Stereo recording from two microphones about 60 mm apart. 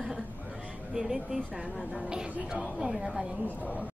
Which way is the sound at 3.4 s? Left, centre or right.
Left.